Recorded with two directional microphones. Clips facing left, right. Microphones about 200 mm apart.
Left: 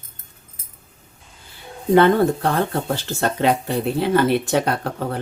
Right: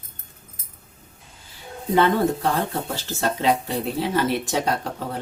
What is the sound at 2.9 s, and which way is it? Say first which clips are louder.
Speech: left 3 dB; 60° left (ahead or behind).